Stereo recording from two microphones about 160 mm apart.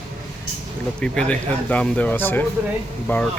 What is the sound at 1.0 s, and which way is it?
Speech, 5° left (ahead or behind).